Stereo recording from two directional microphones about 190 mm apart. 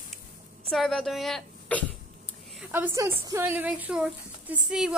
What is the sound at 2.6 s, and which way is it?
Speech, 10° right (ahead or behind).